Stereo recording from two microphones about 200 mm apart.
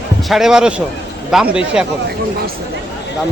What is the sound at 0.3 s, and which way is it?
A man's voice, centre (ahead or behind).